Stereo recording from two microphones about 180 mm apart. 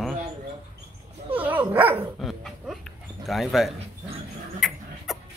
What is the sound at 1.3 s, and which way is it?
Dog, 10° right (ahead or behind).